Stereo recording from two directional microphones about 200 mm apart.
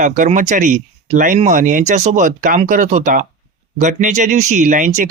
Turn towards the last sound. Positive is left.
turn(degrees=-40)  # may be behind; listen again after turning